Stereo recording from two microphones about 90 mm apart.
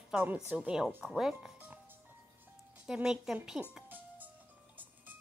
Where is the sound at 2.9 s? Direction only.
5° right (ahead or behind).